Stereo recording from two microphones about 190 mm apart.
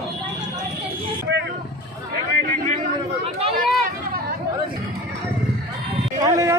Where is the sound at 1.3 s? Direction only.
65° right (ahead or behind).